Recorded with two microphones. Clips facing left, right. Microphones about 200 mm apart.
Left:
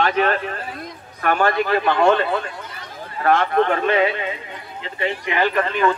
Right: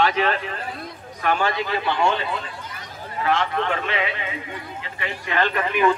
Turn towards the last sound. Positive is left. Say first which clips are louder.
# left 1 dB
turn(degrees=-10)  # may be behind; listen again after turning